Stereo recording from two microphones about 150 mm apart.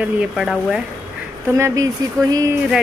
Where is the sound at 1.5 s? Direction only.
20° right (ahead or behind).